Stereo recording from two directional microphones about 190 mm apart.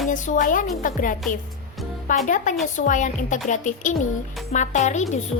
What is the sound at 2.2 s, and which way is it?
A woman's voice, 40° left (ahead or behind).